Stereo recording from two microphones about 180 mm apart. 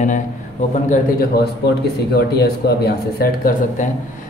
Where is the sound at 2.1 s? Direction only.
60° left (ahead or behind).